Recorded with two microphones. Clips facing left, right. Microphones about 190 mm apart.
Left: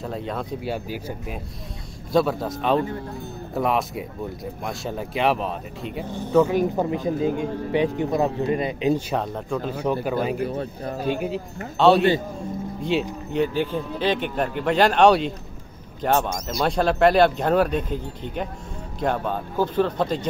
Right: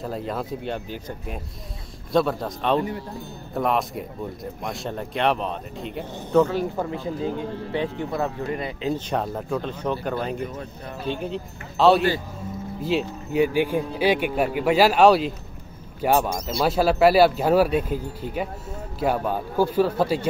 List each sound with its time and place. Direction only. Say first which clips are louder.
0.0 s speech: even; centre (ahead or behind)
6.4 s a man's voice: left 3 dB; 15° left (ahead or behind)
9.1 s speech: even; centre (ahead or behind)
9.7 s a man's voice: left 2 dB; 10° left (ahead or behind)
10.5 s speech: left 6 dB; 35° left (ahead or behind)
11.1 s speech: left 3 dB; 5° left (ahead or behind)
13.3 s speech: right 3 dB; 10° right (ahead or behind)